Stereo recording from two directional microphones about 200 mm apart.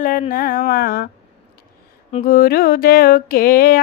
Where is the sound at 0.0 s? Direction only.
45° left (ahead or behind).